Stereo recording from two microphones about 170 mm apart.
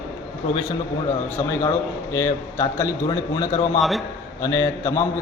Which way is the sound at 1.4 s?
20° left (ahead or behind).